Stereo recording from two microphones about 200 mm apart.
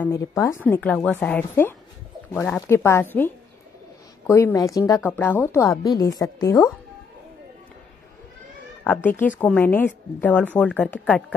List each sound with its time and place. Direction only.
0.0 s a woman's voice: 15° left (ahead or behind)
4.3 s a woman's voice: 10° left (ahead or behind)
8.8 s a woman's voice: 10° left (ahead or behind)